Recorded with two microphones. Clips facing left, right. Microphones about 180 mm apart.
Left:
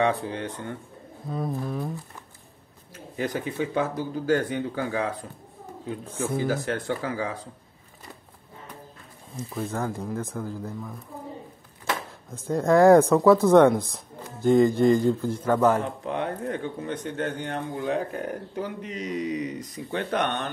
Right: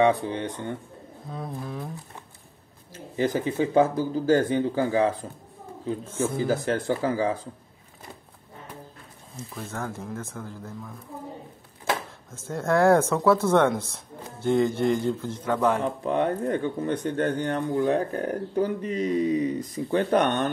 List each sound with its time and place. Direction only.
0.0 s speech: 20° right (ahead or behind)
1.3 s a sound: centre (ahead or behind)
3.2 s speech: 30° right (ahead or behind)
6.6 s speech: 30° right (ahead or behind)
9.6 s speech: 15° left (ahead or behind)
12.3 s speech: 15° left (ahead or behind)
16.1 s speech: 45° right (ahead or behind)